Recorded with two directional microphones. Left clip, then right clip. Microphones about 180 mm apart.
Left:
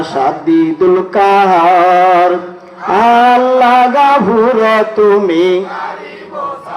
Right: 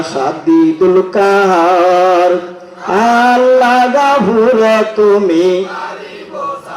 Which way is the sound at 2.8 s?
35° right (ahead or behind).